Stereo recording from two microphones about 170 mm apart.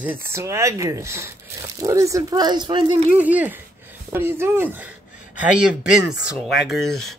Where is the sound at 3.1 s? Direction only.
10° right (ahead or behind).